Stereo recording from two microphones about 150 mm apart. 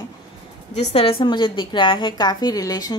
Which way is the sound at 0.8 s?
45° left (ahead or behind).